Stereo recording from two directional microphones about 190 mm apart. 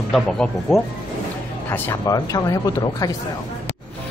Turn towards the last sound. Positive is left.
turn(degrees=20)  # may be behind; listen again after turning